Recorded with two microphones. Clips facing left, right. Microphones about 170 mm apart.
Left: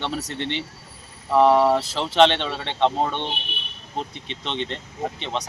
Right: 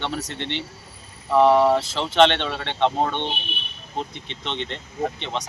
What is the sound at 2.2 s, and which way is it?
Speech, centre (ahead or behind).